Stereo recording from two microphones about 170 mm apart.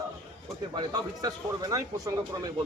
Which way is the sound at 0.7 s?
25° right (ahead or behind).